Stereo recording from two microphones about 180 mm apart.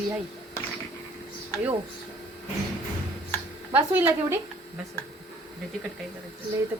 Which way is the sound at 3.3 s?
10° left (ahead or behind).